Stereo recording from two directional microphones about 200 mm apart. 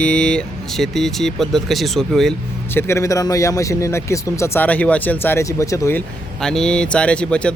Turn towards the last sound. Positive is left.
turn(degrees=5)  # may be behind; listen again after turning